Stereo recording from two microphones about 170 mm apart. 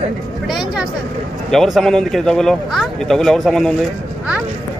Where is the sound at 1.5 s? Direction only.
Centre (ahead or behind).